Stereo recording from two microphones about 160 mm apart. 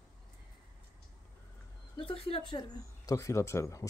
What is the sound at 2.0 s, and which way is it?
Speech, 35° left (ahead or behind).